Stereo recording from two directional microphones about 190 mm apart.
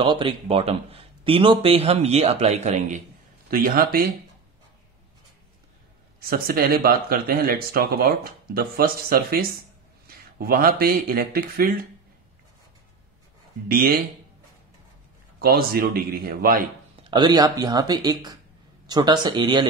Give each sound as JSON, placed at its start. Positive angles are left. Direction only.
{"t": 0.0, "sound": "speech", "side_deg": -25}
{"t": 3.4, "sound": "speech", "side_deg": -50}
{"t": 6.2, "sound": "speech", "side_deg": -50}
{"t": 13.7, "sound": "speech", "side_deg": -50}
{"t": 15.3, "sound": "speech", "side_deg": -50}
{"t": 17.1, "sound": "speech", "side_deg": -20}